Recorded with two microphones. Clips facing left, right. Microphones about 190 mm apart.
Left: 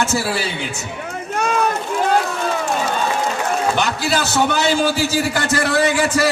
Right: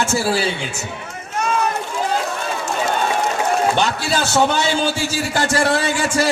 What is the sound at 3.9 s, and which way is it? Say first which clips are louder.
A man's voice: right 1 dB; 30° right (ahead or behind).